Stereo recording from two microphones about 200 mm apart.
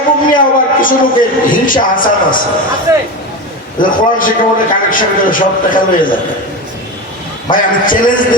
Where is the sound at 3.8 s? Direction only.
40° left (ahead or behind).